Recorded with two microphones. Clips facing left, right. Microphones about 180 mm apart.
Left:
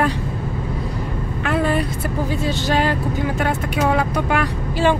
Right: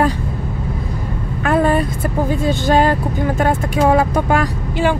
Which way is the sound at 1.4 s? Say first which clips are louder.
Right 5 dB; 45° right (ahead or behind).